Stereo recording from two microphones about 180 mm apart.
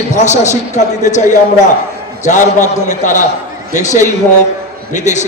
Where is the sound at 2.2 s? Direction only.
45° left (ahead or behind).